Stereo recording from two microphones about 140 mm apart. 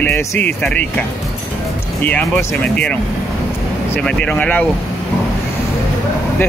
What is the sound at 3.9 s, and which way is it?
Speech, 5° left (ahead or behind).